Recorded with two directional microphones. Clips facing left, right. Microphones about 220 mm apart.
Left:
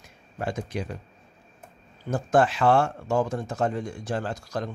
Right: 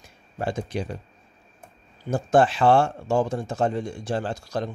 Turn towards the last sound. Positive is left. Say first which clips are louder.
# right 2 dB
turn(degrees=-25)  # may be behind; listen again after turning